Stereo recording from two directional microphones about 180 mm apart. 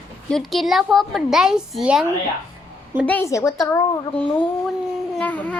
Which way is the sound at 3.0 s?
10° left (ahead or behind).